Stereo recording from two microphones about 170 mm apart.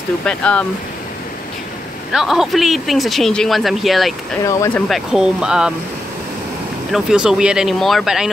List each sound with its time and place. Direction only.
0.2 s speech: 5° left (ahead or behind)
2.1 s speech: centre (ahead or behind)
4.5 s speech: 20° left (ahead or behind)
4.8 s speech: centre (ahead or behind)
6.9 s speech: 5° right (ahead or behind)